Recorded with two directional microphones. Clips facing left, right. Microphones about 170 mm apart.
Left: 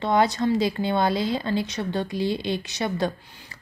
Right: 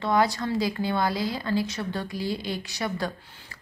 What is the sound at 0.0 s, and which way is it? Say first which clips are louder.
A woman's voice: left 3 dB; 20° left (ahead or behind).